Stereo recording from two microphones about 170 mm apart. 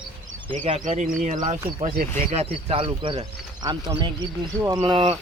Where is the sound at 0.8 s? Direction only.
45° right (ahead or behind).